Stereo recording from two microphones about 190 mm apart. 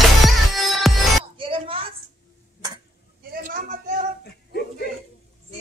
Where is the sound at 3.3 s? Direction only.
50° right (ahead or behind).